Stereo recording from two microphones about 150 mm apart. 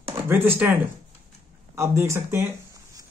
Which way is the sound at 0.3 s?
15° right (ahead or behind).